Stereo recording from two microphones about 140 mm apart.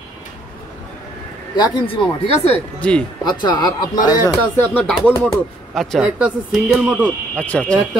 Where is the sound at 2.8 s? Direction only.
10° left (ahead or behind).